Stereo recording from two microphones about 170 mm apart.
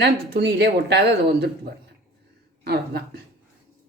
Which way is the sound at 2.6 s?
70° right (ahead or behind).